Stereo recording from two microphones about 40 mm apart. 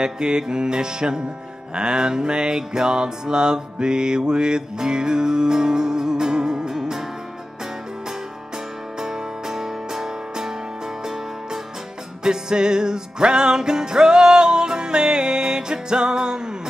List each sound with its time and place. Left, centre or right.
0.0 s music: centre
9.0 s music: centre
12.2 s music: centre